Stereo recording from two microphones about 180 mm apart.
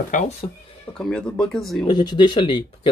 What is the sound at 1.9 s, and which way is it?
Speech, 25° left (ahead or behind).